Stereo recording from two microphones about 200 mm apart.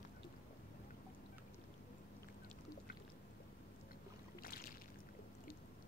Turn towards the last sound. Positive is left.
turn(degrees=45)  # may be behind; listen again after turning